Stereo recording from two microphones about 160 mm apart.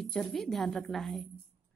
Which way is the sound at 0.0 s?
5° left (ahead or behind).